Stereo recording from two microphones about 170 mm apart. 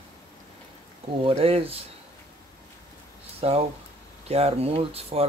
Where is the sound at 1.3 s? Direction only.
35° right (ahead or behind).